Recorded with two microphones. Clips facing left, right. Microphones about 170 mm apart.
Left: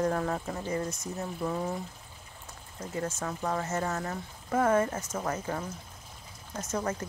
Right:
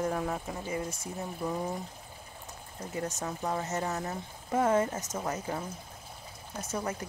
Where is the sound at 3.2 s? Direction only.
20° right (ahead or behind).